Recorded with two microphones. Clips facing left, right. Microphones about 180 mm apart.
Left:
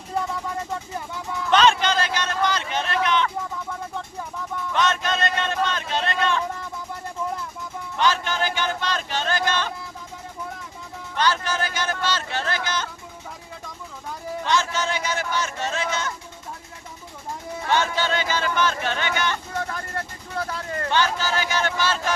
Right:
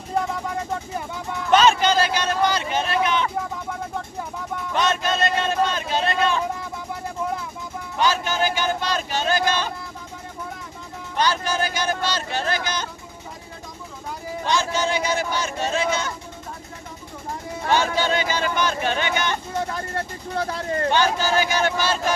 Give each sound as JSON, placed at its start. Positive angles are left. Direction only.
{"t": 1.5, "sound": "a sound", "side_deg": -5}
{"t": 4.7, "sound": "a sound", "side_deg": -10}
{"t": 7.9, "sound": "speech", "side_deg": -10}
{"t": 11.2, "sound": "speech", "side_deg": -10}
{"t": 14.4, "sound": "speech", "side_deg": -10}
{"t": 17.7, "sound": "speech", "side_deg": -15}
{"t": 20.3, "sound": "speech", "side_deg": -35}
{"t": 20.9, "sound": "speech", "side_deg": -15}